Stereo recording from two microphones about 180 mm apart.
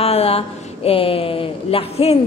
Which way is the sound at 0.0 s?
35° left (ahead or behind).